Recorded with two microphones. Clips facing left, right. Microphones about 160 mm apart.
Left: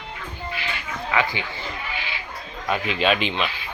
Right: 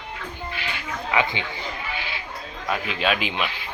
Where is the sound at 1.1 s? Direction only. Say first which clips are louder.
Even; 20° right (ahead or behind).